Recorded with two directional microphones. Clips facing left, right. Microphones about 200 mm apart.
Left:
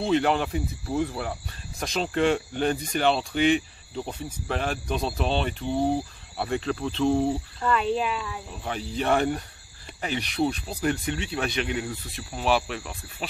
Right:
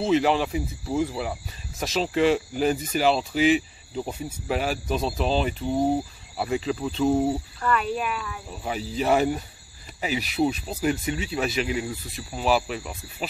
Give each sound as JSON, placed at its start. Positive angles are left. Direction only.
{"t": 0.0, "sound": "speech", "side_deg": 0}
{"t": 7.6, "sound": "speech", "side_deg": 25}
{"t": 8.5, "sound": "speech", "side_deg": -5}